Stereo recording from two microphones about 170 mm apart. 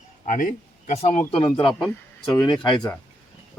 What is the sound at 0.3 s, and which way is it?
Speech, 50° left (ahead or behind).